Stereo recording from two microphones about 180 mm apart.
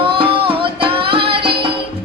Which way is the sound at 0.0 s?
30° right (ahead or behind).